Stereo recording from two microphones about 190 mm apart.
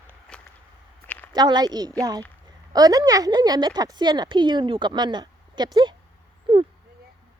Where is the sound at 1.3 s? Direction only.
20° right (ahead or behind).